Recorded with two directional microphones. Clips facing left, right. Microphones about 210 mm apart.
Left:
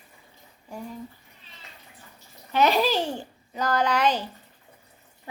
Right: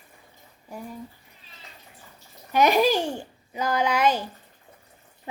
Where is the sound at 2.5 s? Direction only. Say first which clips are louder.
Right 2 dB; 15° right (ahead or behind).